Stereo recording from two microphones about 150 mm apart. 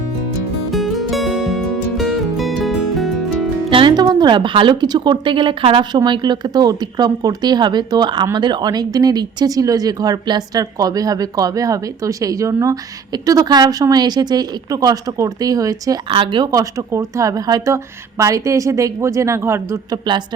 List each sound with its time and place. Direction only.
0.7 s music: centre (ahead or behind)
3.7 s a woman's voice: 35° right (ahead or behind); by 20.0 s 20° right (ahead or behind)